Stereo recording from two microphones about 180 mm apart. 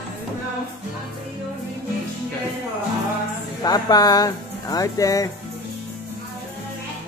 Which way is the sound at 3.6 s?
20° left (ahead or behind).